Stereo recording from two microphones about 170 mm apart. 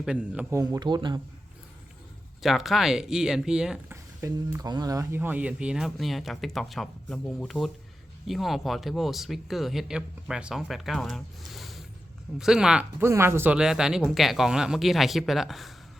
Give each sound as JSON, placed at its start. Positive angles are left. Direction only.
{"t": 0.0, "sound": "speech", "side_deg": -5}
{"t": 0.5, "sound": "a man's voice", "side_deg": -20}
{"t": 2.4, "sound": "speech", "side_deg": 0}
{"t": 4.2, "sound": "speech", "side_deg": -20}